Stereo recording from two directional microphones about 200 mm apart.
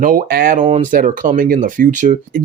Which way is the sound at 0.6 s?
35° right (ahead or behind).